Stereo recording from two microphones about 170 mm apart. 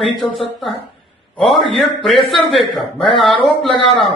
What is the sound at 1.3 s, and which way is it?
A man's voice, centre (ahead or behind).